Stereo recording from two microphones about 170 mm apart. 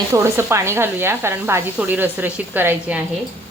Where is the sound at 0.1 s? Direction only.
15° right (ahead or behind).